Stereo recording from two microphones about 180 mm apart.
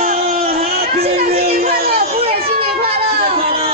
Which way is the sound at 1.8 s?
35° right (ahead or behind).